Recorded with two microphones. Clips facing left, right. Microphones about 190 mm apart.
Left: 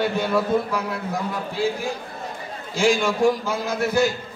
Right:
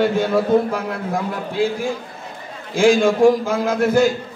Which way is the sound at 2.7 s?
50° right (ahead or behind).